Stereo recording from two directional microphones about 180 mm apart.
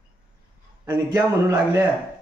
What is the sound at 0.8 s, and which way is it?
A man's voice, 20° right (ahead or behind).